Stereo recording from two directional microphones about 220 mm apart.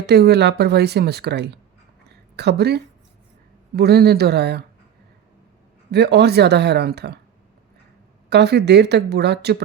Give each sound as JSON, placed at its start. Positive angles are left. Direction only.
{"t": 0.0, "sound": "a woman's voice", "side_deg": -50}
{"t": 5.9, "sound": "a woman's voice", "side_deg": -50}
{"t": 8.3, "sound": "a woman's voice", "side_deg": -50}